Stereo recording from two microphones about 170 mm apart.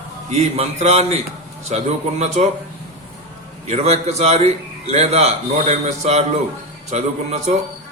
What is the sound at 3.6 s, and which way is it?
A man's voice, 40° right (ahead or behind).